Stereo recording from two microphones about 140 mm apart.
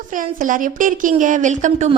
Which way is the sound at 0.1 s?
70° right (ahead or behind).